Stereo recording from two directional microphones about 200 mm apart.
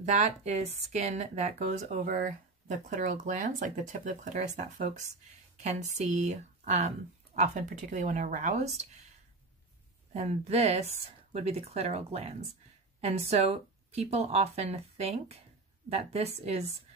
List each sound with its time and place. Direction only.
0.0 s speech: 35° right (ahead or behind)
10.1 s speech: 35° right (ahead or behind)